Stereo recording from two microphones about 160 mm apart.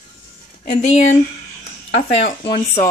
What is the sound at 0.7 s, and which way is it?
Speech, 45° left (ahead or behind).